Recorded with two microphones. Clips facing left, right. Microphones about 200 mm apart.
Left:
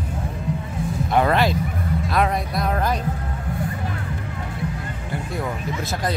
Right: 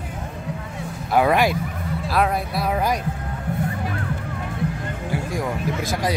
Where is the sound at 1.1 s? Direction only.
10° right (ahead or behind).